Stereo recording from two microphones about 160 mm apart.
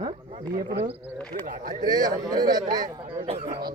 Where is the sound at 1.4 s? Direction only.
55° right (ahead or behind).